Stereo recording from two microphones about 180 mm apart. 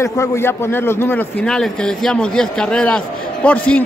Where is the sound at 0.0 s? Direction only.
15° left (ahead or behind).